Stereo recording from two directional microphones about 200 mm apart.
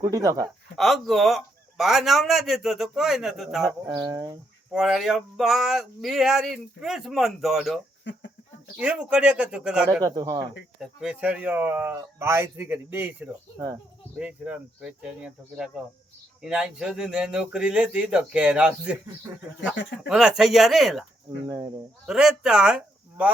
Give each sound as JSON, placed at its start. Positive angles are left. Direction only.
{"t": 0.0, "sound": "speech", "side_deg": -15}
{"t": 0.4, "sound": "speech", "side_deg": 0}
{"t": 3.8, "sound": "speech", "side_deg": -20}
{"t": 4.7, "sound": "speech", "side_deg": 0}
{"t": 8.0, "sound": "a sound", "side_deg": 60}
{"t": 8.8, "sound": "speech", "side_deg": -5}
{"t": 10.0, "sound": "speech", "side_deg": -20}
{"t": 10.8, "sound": "speech", "side_deg": -5}
{"t": 22.0, "sound": "speech", "side_deg": 0}